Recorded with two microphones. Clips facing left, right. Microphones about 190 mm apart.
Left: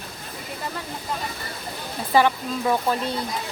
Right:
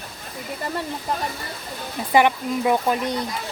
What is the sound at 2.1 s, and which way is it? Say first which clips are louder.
Speech: right 2 dB; 15° right (ahead or behind).